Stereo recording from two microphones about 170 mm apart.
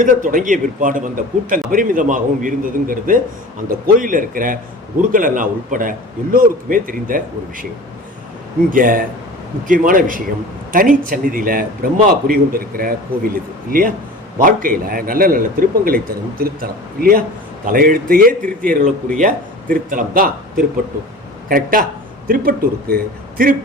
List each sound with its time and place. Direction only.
0.0 s speech: 50° right (ahead or behind)
8.7 s speech: 55° right (ahead or behind)